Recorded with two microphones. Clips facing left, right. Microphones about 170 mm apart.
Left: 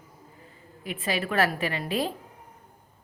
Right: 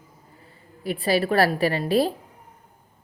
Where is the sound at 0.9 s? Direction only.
35° right (ahead or behind).